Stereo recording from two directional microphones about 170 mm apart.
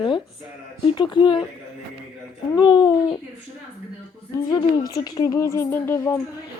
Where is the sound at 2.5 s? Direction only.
25° left (ahead or behind).